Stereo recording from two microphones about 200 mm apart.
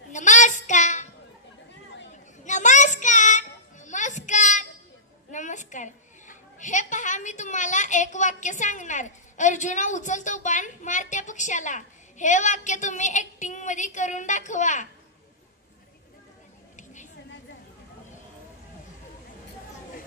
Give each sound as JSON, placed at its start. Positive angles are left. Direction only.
{"t": 0.1, "sound": "child singing", "side_deg": 35}
{"t": 2.4, "sound": "child singing", "side_deg": 35}
{"t": 5.3, "sound": "a woman's voice", "side_deg": 35}
{"t": 16.7, "sound": "a sound", "side_deg": 40}